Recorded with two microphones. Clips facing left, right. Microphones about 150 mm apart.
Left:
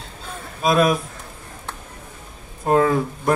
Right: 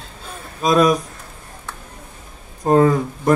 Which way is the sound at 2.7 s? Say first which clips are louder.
Right 3 dB; 40° right (ahead or behind).